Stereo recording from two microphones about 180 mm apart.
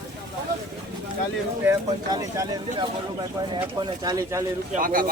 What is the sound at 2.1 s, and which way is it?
Speech, 20° right (ahead or behind).